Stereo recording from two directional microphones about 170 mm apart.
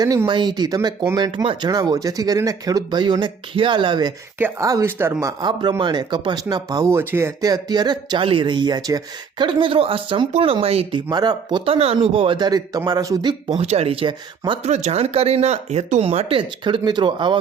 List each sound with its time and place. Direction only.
0.0 s speech: 20° right (ahead or behind)
4.4 s speech: 15° right (ahead or behind)
5.2 s speech: 25° right (ahead or behind)
11.1 s speech: 25° right (ahead or behind)
13.6 s speech: 35° right (ahead or behind)
14.7 s speech: 40° right (ahead or behind)